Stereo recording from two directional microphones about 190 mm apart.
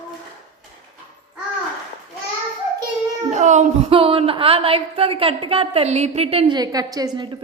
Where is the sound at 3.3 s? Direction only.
40° right (ahead or behind).